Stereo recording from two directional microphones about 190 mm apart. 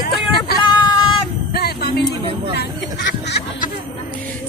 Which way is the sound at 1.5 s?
55° left (ahead or behind).